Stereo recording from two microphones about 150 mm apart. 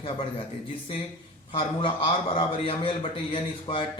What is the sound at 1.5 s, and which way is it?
A man's voice, 35° left (ahead or behind).